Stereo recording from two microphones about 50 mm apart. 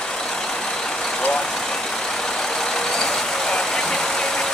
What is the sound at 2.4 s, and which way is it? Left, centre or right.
Vehicle, centre.